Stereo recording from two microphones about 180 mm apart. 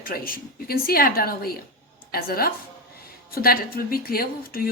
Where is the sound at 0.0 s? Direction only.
55° left (ahead or behind).